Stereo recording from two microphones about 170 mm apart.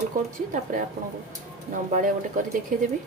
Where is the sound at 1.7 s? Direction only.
50° right (ahead or behind).